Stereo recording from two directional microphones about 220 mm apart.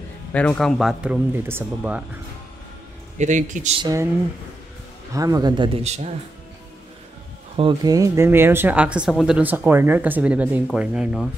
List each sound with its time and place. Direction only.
0.3 s speech: 5° left (ahead or behind)
3.2 s speech: 35° right (ahead or behind)
3.8 s speech: 15° right (ahead or behind)
5.1 s speech: 15° right (ahead or behind)
7.5 s speech: 20° right (ahead or behind); by 11.2 s 5° right (ahead or behind)